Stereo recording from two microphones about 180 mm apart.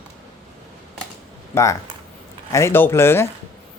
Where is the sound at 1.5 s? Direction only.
15° left (ahead or behind).